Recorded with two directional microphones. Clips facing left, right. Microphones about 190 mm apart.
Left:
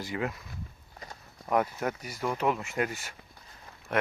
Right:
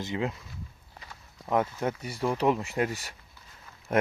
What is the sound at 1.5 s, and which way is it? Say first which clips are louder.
Speech: right 1 dB; 25° right (ahead or behind).